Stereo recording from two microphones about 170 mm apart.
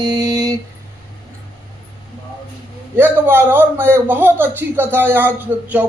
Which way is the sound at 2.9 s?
10° right (ahead or behind).